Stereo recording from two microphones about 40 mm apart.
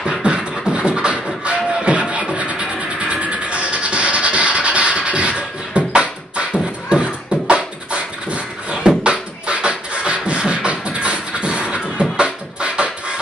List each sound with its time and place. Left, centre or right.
0.2 s beatboxing: right
2.3 s music: right
6.9 s beatboxing: right